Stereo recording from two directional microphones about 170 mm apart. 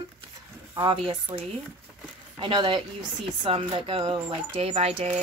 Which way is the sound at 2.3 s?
30° right (ahead or behind).